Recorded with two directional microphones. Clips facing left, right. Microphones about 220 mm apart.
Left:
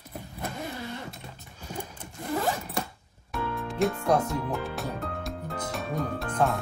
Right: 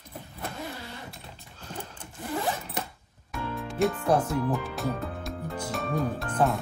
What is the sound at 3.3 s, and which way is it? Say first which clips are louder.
Music: left 2 dB; centre (ahead or behind).